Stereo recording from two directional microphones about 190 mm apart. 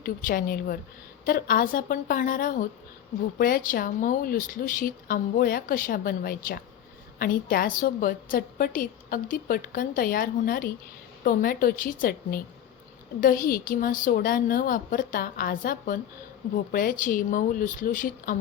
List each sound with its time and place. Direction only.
0.0 s a woman's voice: 45° left (ahead or behind)